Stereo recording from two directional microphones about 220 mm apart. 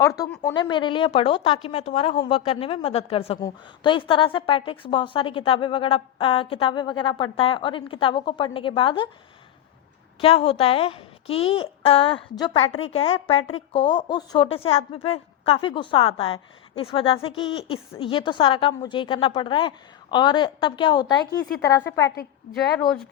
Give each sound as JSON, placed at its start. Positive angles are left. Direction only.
{"t": 0.0, "sound": "a woman's voice", "side_deg": 15}
{"t": 10.2, "sound": "a woman's voice", "side_deg": 25}